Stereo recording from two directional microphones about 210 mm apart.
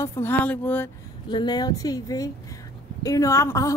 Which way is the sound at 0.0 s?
10° left (ahead or behind).